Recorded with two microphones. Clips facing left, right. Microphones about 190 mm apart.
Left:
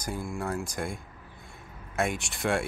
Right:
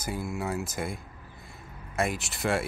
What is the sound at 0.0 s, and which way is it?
Speech, 5° right (ahead or behind).